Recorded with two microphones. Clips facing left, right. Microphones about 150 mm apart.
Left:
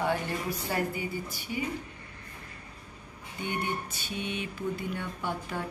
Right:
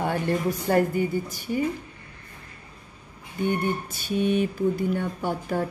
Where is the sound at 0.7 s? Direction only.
50° right (ahead or behind).